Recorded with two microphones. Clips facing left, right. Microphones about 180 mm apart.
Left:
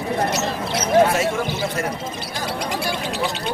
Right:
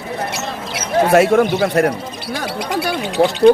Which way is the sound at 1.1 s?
65° right (ahead or behind).